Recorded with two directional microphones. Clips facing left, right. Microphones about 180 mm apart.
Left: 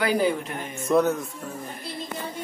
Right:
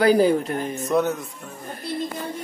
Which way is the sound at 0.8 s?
Centre (ahead or behind).